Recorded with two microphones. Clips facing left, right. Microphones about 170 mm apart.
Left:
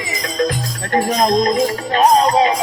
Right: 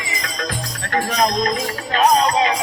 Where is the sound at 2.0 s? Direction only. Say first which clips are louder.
Left 3 dB; 30° left (ahead or behind).